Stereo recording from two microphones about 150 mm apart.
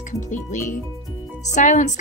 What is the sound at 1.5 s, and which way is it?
Speech, 55° left (ahead or behind).